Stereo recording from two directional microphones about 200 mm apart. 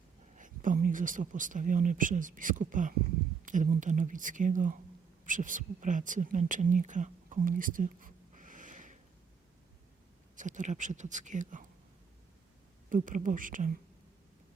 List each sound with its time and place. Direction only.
0.3 s speech: 40° right (ahead or behind)
10.3 s speech: 40° right (ahead or behind)
12.9 s speech: 40° right (ahead or behind)